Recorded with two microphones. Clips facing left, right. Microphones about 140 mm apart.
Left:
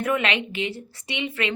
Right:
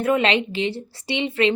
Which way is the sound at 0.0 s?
30° right (ahead or behind).